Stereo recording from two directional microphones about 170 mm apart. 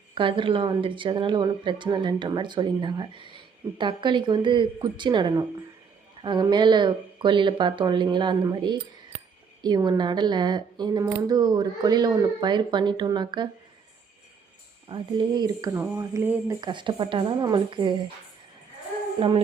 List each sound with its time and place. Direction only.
0.1 s a woman's voice: 30° right (ahead or behind)
14.8 s a woman's voice: 30° right (ahead or behind)
16.0 s a sound: 15° right (ahead or behind)
16.6 s a woman's voice: 25° right (ahead or behind)